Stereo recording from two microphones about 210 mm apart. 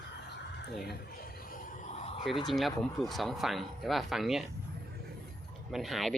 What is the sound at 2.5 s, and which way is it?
Speech, centre (ahead or behind).